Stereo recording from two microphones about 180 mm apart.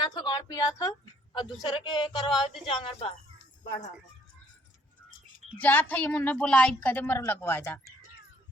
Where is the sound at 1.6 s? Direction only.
25° left (ahead or behind).